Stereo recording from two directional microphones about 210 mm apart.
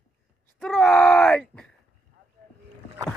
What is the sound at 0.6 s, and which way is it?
Groan, 5° left (ahead or behind).